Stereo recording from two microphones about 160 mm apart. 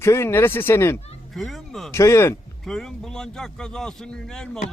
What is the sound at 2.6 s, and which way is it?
Speech, 5° left (ahead or behind).